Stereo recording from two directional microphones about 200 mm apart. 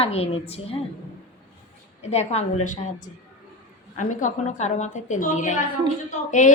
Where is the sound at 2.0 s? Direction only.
35° left (ahead or behind).